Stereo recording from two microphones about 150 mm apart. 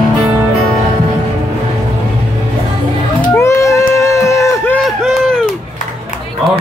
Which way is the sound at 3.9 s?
20° left (ahead or behind).